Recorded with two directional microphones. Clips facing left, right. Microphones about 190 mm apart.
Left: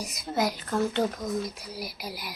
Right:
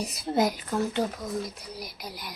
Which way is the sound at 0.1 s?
25° right (ahead or behind).